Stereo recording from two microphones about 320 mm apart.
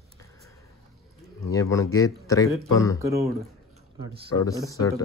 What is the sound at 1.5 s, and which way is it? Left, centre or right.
A man's voice, centre.